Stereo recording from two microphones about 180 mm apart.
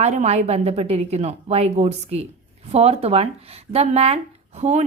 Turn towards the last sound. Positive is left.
turn(degrees=-35)  # may be behind; listen again after turning